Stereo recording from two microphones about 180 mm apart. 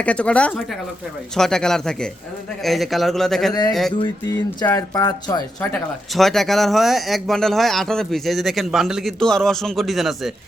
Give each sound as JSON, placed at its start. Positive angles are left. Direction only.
{"t": 0.0, "sound": "speech", "side_deg": 5}
{"t": 4.0, "sound": "speech", "side_deg": 15}
{"t": 5.7, "sound": "speech", "side_deg": 0}